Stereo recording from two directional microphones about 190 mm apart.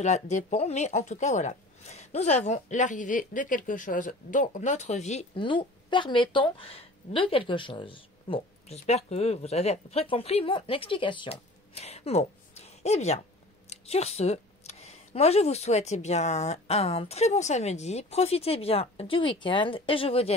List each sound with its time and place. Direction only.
0.0 s a woman's voice: 40° left (ahead or behind)